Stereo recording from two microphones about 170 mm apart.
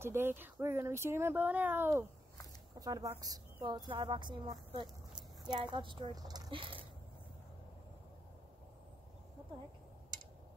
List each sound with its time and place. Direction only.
0.0 s speech: 15° right (ahead or behind); by 6.8 s 30° right (ahead or behind)